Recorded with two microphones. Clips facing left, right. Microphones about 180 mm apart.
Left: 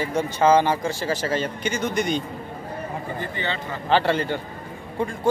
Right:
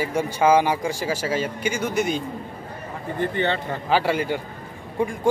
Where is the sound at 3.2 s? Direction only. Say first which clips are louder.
Right 6 dB; 55° right (ahead or behind).